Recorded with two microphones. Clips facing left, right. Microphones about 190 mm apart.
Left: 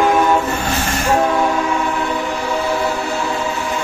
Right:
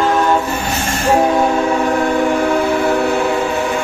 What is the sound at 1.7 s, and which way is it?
Train, 45° right (ahead or behind).